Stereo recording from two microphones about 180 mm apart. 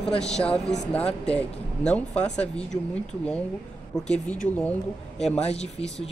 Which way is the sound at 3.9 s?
20° left (ahead or behind).